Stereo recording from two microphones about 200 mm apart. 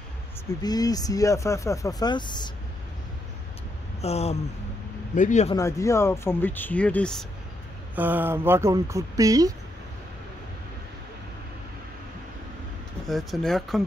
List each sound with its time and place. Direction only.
0.6 s speech: 20° left (ahead or behind)
4.0 s speech: 30° left (ahead or behind)
5.6 s speech: 15° left (ahead or behind)
7.9 s speech: 10° right (ahead or behind)
13.0 s speech: centre (ahead or behind)